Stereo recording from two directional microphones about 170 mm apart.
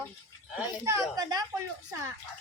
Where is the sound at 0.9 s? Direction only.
20° right (ahead or behind).